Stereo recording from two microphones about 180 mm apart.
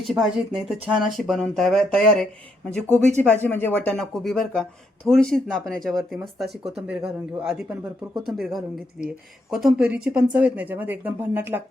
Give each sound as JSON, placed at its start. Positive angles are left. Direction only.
{"t": 0.0, "sound": "speech", "side_deg": 0}